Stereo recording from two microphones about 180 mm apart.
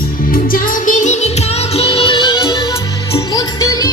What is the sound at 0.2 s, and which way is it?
Music, 50° left (ahead or behind).